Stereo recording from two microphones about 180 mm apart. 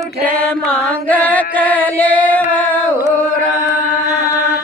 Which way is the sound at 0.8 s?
10° left (ahead or behind).